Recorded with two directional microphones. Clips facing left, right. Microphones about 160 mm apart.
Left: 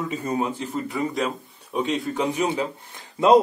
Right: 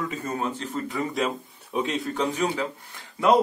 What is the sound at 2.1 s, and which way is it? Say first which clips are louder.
Speech: left 2 dB; 15° left (ahead or behind).